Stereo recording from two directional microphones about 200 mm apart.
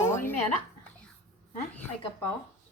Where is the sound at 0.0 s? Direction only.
15° left (ahead or behind).